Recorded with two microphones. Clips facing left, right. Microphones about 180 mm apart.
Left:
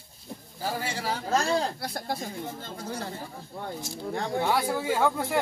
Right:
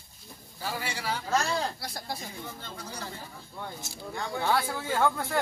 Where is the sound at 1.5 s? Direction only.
55° left (ahead or behind).